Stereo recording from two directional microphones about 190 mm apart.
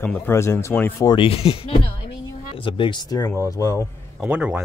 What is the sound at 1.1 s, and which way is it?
Speech, 30° left (ahead or behind).